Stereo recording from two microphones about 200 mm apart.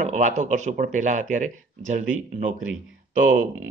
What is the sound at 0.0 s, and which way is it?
A man's voice, 35° right (ahead or behind).